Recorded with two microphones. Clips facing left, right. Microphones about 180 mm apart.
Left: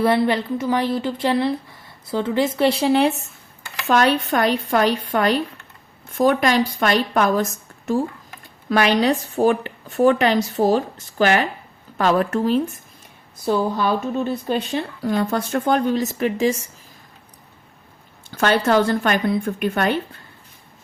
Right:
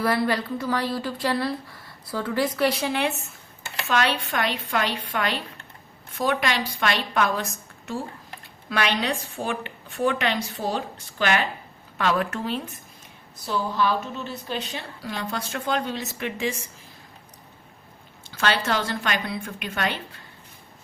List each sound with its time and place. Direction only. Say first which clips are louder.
0.0 s a woman's voice: left 5 dB; 25° left (ahead or behind)
18.3 s a woman's voice: left 8 dB; 50° left (ahead or behind)